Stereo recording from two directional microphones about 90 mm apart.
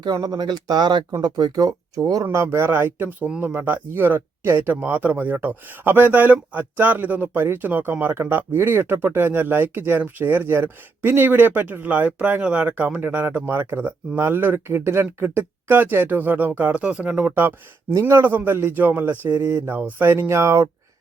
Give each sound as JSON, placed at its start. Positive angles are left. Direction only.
{"t": 0.0, "sound": "speech", "side_deg": -50}
{"t": 2.3, "sound": "speech", "side_deg": -30}